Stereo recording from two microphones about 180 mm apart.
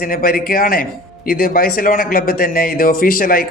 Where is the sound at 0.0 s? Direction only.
55° left (ahead or behind).